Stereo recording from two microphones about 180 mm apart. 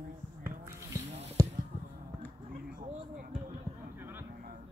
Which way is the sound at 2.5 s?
50° right (ahead or behind).